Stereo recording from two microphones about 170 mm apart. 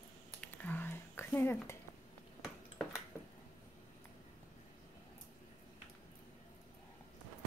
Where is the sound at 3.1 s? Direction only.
15° left (ahead or behind).